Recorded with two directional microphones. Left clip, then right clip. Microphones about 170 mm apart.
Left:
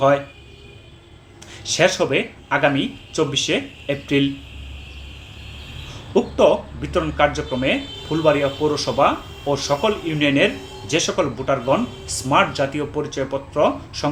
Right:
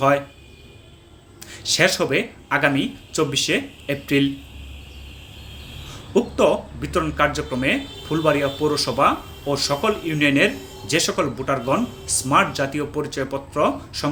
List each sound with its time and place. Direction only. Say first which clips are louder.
1.6 s speech: left 1 dB; 15° right (ahead or behind)
6.1 s speech: left 2 dB; 15° right (ahead or behind)